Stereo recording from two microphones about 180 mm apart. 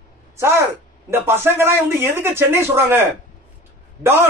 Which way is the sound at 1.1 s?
15° right (ahead or behind).